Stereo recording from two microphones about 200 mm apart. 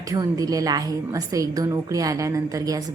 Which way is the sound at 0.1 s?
20° right (ahead or behind).